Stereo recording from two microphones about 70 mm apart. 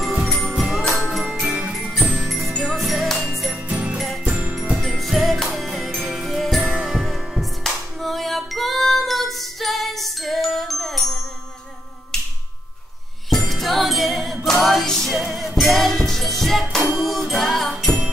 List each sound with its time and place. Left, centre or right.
0.3 s music: centre
2.5 s music: centre
3.6 s music: centre
4.8 s music: centre
6.6 s music: centre
6.9 s music: centre
13.3 s music: centre